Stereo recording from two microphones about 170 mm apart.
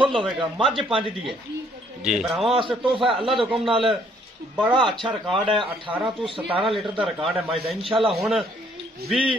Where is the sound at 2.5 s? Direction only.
30° right (ahead or behind).